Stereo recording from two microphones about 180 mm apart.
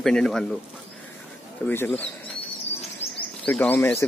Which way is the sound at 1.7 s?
10° left (ahead or behind).